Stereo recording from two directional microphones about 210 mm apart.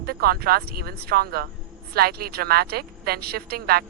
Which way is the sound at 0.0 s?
45° right (ahead or behind).